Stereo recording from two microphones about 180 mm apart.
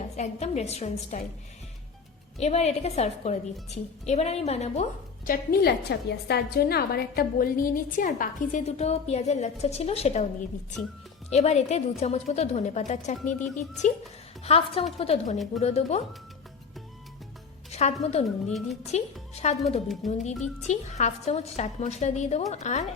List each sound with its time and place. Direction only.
0.2 s a woman's voice: 40° left (ahead or behind)
2.4 s a woman's voice: 35° left (ahead or behind)
11.3 s a woman's voice: 40° left (ahead or behind)
17.7 s a woman's voice: 35° left (ahead or behind)
18.4 s speech: centre (ahead or behind)
18.9 s a woman's voice: 35° left (ahead or behind)
20.0 s speech: centre (ahead or behind)
20.6 s a woman's voice: 40° left (ahead or behind)